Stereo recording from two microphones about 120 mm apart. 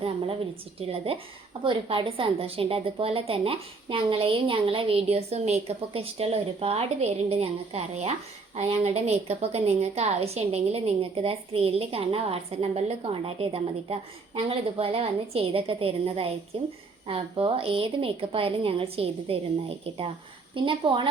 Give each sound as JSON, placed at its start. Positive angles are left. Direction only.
{"t": 0.8, "sound": "a woman's voice", "side_deg": -55}